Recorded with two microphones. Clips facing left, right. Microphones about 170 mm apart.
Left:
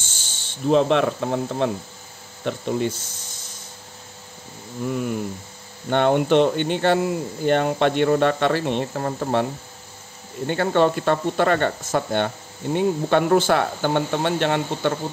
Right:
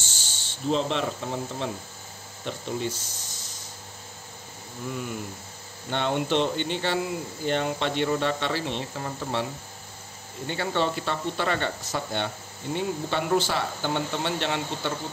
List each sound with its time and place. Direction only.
0.0 s snake: 50° left (ahead or behind)
2.4 s speech: 60° left (ahead or behind)
4.8 s speech: 50° left (ahead or behind)